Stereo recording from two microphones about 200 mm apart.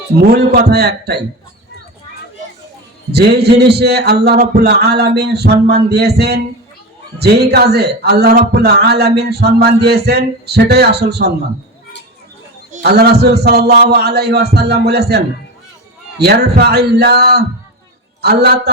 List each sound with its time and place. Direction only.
0.2 s a man's voice: 50° right (ahead or behind)
3.1 s a man's voice: 55° right (ahead or behind)
12.8 s a man's voice: 55° right (ahead or behind)